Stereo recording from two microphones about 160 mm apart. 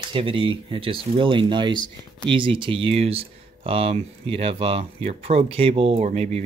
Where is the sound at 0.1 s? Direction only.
35° right (ahead or behind).